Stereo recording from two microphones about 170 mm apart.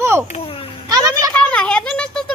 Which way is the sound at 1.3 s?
5° left (ahead or behind).